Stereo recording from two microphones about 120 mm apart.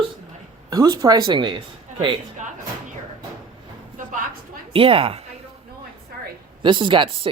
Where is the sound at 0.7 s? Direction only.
35° right (ahead or behind).